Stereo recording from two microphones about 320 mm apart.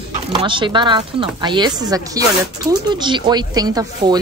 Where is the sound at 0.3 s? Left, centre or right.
Centre.